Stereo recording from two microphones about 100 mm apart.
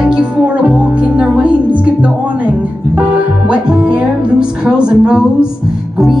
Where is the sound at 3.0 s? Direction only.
15° right (ahead or behind).